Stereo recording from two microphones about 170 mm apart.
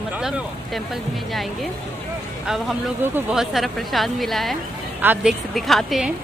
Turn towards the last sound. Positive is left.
turn(degrees=0)  # may be behind; listen again after turning